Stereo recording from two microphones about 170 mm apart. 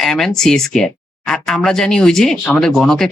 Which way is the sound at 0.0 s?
Centre (ahead or behind).